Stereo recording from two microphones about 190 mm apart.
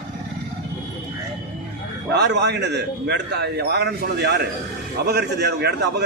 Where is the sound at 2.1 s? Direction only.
60° right (ahead or behind).